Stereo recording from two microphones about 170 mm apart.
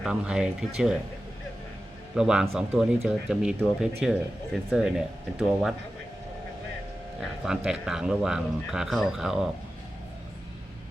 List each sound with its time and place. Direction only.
0.0 s speech: 5° right (ahead or behind)
2.1 s speech: 5° right (ahead or behind)
7.2 s speech: 5° right (ahead or behind)